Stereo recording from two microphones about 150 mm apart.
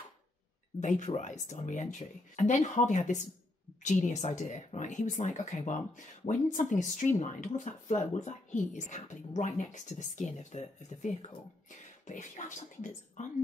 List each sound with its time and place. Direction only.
0.7 s speech: 55° left (ahead or behind)